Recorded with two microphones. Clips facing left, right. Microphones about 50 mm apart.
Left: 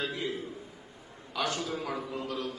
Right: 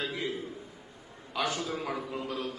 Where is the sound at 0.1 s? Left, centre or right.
Right.